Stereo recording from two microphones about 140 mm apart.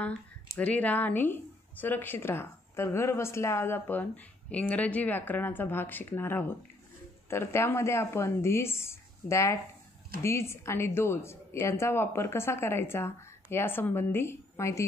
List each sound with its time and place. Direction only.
0.0 s a woman's voice: 10° left (ahead or behind)